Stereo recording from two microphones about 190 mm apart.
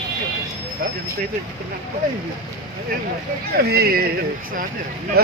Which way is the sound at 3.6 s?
55° right (ahead or behind).